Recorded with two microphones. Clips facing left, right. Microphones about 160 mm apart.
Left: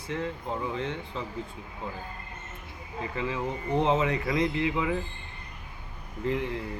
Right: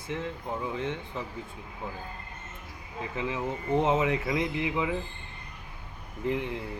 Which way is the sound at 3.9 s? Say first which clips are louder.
Even; 10° right (ahead or behind).